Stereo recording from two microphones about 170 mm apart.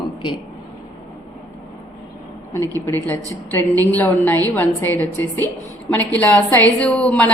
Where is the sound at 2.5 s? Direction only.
15° left (ahead or behind).